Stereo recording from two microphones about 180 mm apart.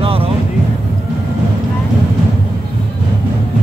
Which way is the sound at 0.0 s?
30° right (ahead or behind).